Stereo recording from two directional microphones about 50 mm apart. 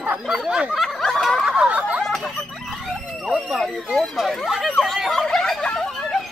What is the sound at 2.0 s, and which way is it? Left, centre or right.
Snicker, centre.